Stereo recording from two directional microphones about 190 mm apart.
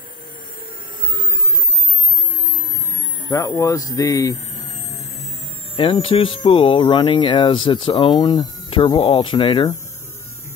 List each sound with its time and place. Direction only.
3.3 s speech: 20° left (ahead or behind)
5.8 s speech: 30° left (ahead or behind)